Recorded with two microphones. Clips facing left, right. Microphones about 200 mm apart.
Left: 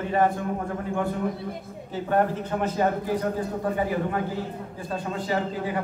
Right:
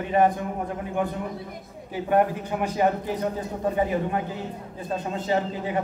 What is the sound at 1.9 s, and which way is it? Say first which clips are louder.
Speech: right 2 dB; 15° right (ahead or behind).